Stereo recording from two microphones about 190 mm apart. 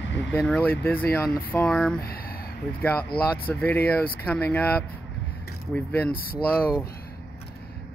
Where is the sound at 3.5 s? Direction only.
10° left (ahead or behind).